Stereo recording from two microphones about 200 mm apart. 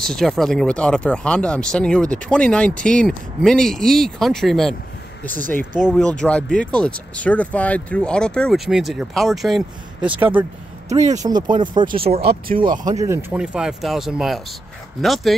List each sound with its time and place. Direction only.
0.0 s speech: centre (ahead or behind)
5.8 s speech: centre (ahead or behind)
10.9 s speech: 35° right (ahead or behind)
11.2 s speech: 20° right (ahead or behind)
13.0 s speech: 10° right (ahead or behind)